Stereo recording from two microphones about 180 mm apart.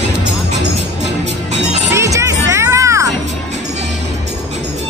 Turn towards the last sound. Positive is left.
turn(degrees=-15)  # may be behind; listen again after turning